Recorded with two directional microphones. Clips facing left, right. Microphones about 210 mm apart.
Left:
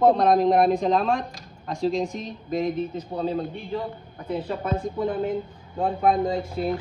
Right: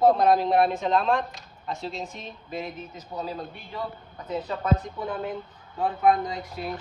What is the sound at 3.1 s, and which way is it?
Speech, 35° left (ahead or behind).